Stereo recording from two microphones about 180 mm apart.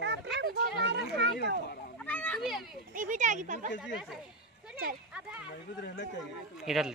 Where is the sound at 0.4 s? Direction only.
70° right (ahead or behind).